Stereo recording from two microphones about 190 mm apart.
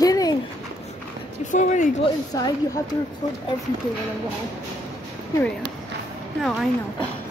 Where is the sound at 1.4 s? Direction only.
40° left (ahead or behind).